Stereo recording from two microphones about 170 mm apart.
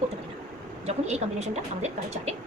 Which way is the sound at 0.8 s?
40° right (ahead or behind).